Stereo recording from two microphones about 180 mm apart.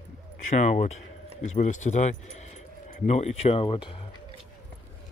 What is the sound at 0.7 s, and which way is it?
Speech, 40° left (ahead or behind).